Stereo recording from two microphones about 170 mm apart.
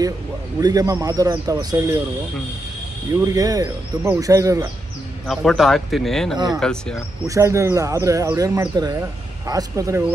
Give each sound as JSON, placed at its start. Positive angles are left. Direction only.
{"t": 0.6, "sound": "speech", "side_deg": -20}
{"t": 3.3, "sound": "speech", "side_deg": -20}
{"t": 5.2, "sound": "speech", "side_deg": 0}
{"t": 6.3, "sound": "speech", "side_deg": -25}
{"t": 6.6, "sound": "speech", "side_deg": 5}
{"t": 7.2, "sound": "speech", "side_deg": -15}